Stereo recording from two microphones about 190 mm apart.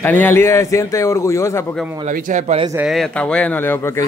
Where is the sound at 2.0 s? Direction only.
40° right (ahead or behind).